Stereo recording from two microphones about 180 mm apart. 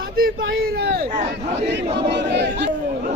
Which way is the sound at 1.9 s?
75° right (ahead or behind).